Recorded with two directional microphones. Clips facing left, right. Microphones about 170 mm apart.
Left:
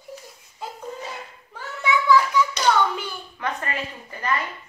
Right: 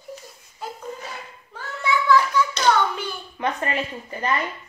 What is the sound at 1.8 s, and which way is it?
Hands, 15° left (ahead or behind).